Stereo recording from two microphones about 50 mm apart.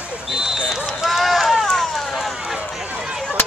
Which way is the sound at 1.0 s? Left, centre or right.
Centre.